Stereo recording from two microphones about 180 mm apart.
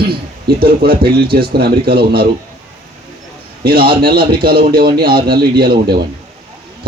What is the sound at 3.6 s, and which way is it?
A man's voice, 55° right (ahead or behind).